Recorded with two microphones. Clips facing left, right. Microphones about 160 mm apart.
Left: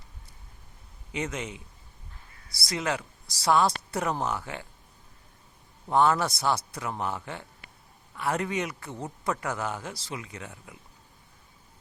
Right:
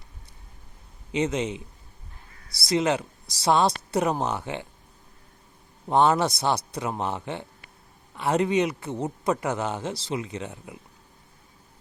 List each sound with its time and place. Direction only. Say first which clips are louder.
1.1 s speech: right 8 dB; 20° right (ahead or behind)
2.6 s speech: right 7 dB; 20° right (ahead or behind)
5.9 s speech: right 3 dB; 20° right (ahead or behind)